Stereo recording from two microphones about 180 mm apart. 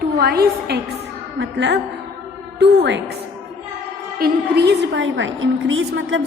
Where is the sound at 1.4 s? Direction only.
80° right.